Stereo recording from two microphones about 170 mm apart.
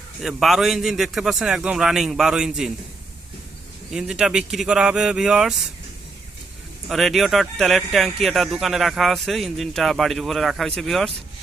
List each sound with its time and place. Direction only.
0.2 s speech: centre (ahead or behind)
3.9 s speech: 5° right (ahead or behind)
6.8 s speech: centre (ahead or behind)